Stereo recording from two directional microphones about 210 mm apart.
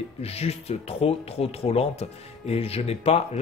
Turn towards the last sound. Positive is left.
turn(degrees=30)  # may be behind; listen again after turning